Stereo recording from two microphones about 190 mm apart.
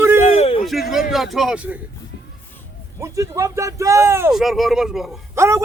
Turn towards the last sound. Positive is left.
turn(degrees=-15)  # may be behind; listen again after turning